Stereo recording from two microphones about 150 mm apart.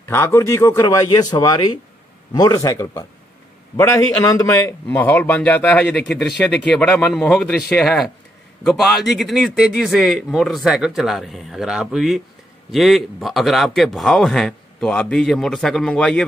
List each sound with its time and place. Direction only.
0.1 s a man's voice: 15° left (ahead or behind)